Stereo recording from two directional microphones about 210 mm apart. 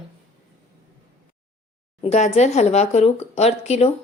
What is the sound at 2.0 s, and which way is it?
Speech, 30° left (ahead or behind).